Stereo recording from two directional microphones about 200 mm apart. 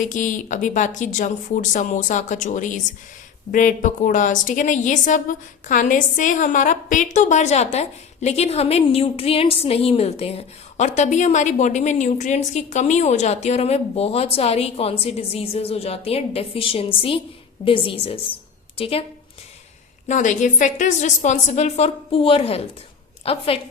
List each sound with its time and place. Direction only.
0.0 s a woman's voice: 40° left (ahead or behind)
20.1 s a woman's voice: 40° left (ahead or behind)